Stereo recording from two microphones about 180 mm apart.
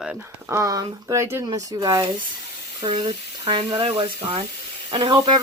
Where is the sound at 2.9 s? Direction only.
30° right (ahead or behind).